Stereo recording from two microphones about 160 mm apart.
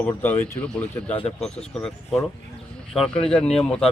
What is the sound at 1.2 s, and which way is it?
Speech, 40° left (ahead or behind).